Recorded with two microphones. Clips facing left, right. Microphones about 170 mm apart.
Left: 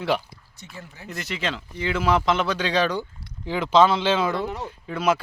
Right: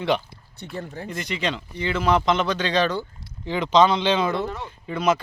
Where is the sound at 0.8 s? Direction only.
50° right (ahead or behind).